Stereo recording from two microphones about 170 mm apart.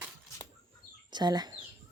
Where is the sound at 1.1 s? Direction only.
25° right (ahead or behind).